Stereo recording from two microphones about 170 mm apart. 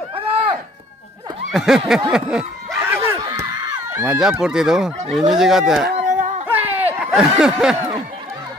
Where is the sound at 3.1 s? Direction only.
20° right (ahead or behind).